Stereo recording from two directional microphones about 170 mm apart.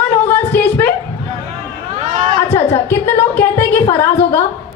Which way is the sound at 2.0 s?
45° right (ahead or behind).